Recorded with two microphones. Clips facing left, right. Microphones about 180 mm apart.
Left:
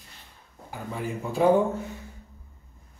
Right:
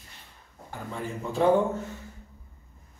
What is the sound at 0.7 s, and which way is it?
Speech, 10° left (ahead or behind).